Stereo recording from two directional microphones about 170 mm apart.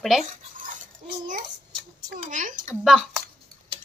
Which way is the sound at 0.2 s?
50° right (ahead or behind).